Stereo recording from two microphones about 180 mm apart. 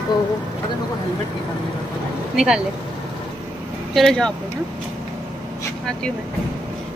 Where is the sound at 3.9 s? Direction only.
Centre (ahead or behind).